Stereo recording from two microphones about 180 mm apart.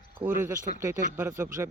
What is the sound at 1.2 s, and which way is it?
Speech, 15° right (ahead or behind).